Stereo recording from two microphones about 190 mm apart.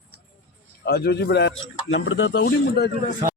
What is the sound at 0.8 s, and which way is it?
Speech, 60° left (ahead or behind).